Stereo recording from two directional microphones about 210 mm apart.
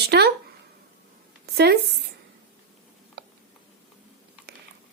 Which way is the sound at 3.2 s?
50° right (ahead or behind).